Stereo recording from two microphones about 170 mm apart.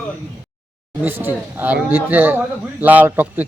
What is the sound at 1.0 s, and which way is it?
Speech, 15° right (ahead or behind).